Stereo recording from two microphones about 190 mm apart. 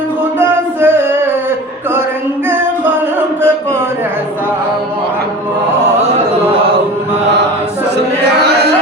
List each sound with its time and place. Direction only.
0.3 s music: 10° right (ahead or behind)
2.5 s music: 10° right (ahead or behind)
7.9 s a sound: 60° right (ahead or behind)